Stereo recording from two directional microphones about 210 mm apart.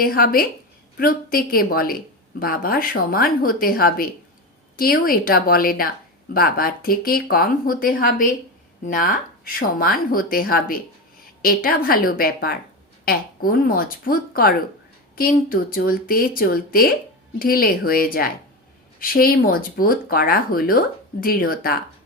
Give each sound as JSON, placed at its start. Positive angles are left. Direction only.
{"t": 0.0, "sound": "speech", "side_deg": 45}